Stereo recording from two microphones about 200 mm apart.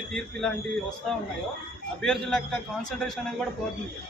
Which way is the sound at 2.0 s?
5° left (ahead or behind).